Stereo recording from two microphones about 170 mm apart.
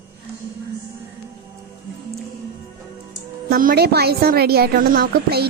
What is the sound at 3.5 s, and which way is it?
A woman's voice, 60° right (ahead or behind).